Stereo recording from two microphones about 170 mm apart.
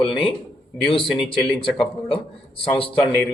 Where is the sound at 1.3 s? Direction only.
30° left (ahead or behind).